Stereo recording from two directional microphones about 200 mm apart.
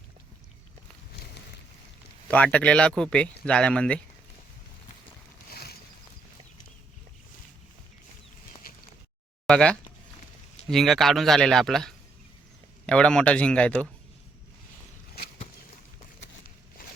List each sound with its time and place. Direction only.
2.3 s speech: 5° left (ahead or behind)
8.7 s a sound: 50° left (ahead or behind)
9.5 s speech: 5° left (ahead or behind)